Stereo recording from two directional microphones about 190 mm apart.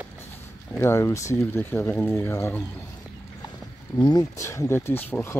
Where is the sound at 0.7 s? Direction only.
15° left (ahead or behind).